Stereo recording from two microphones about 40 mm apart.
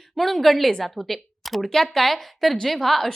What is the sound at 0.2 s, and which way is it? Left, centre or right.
A woman's voice, centre.